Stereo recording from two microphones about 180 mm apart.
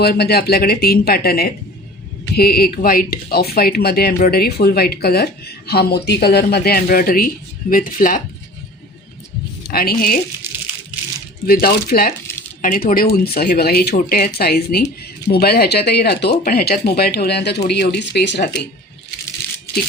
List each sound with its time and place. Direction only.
0.0 s speech: 60° left (ahead or behind)
9.6 s speech: 55° left (ahead or behind)
11.4 s speech: 55° left (ahead or behind); by 18.4 s 75° left (ahead or behind)